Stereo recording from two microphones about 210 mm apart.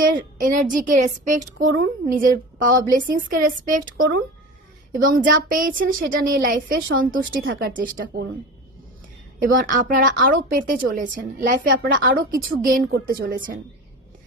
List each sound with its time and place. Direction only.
0.0 s a sound: 40° right (ahead or behind)
0.7 s a woman's voice: 40° right (ahead or behind)
4.9 s a woman's voice: 40° right (ahead or behind)
9.4 s a woman's voice: 40° right (ahead or behind)